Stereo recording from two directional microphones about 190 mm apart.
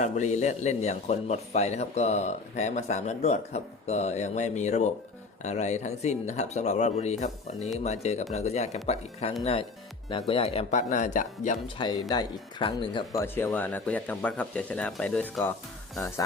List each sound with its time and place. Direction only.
0.0 s a man's voice: 40° left (ahead or behind)
11.8 s speech: 20° left (ahead or behind)
13.2 s speech: 10° left (ahead or behind)